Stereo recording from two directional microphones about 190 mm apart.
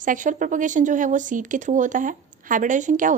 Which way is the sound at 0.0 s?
45° right (ahead or behind).